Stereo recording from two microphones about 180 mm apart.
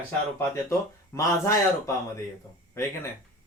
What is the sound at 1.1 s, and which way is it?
Speech, 15° left (ahead or behind).